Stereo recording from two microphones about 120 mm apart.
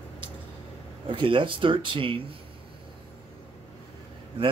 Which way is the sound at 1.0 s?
45° right (ahead or behind).